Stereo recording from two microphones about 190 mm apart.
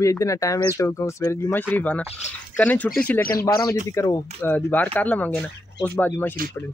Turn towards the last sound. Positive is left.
turn(degrees=10)  # may be behind; listen again after turning